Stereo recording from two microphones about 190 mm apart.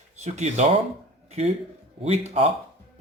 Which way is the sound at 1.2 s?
35° right (ahead or behind).